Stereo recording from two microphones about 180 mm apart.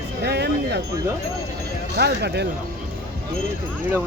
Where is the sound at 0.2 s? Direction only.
70° right (ahead or behind).